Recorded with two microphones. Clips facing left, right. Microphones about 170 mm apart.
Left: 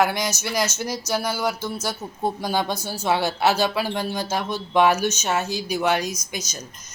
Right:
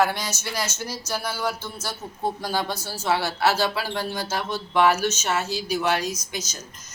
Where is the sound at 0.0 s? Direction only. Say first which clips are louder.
Left 2 dB; 15° left (ahead or behind).